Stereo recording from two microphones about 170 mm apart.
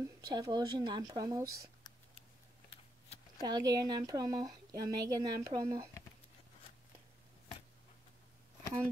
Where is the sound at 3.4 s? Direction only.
25° right (ahead or behind).